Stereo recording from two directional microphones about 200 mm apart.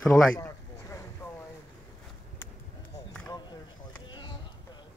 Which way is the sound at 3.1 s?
15° left (ahead or behind).